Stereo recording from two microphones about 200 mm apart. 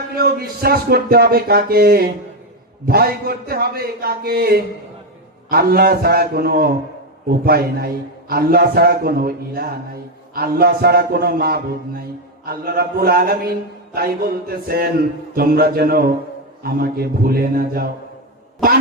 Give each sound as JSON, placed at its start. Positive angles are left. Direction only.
{"t": 0.2, "sound": "a man's voice", "side_deg": -50}